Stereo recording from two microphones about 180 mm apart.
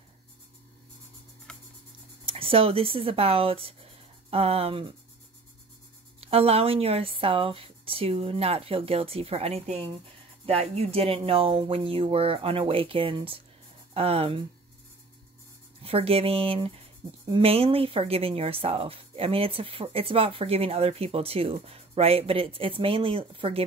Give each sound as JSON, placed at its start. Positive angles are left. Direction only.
{"t": 1.5, "sound": "a sound", "side_deg": 5}
{"t": 2.2, "sound": "speech", "side_deg": -30}
{"t": 6.2, "sound": "speech", "side_deg": -35}
{"t": 15.8, "sound": "speech", "side_deg": -30}